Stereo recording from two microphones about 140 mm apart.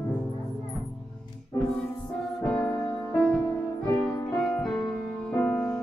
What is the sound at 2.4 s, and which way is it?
Music, 10° left (ahead or behind).